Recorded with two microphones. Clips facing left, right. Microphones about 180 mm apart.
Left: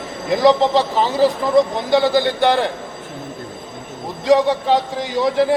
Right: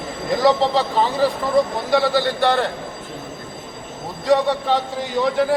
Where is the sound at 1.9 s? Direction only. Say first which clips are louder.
Left 3 dB; 15° left (ahead or behind).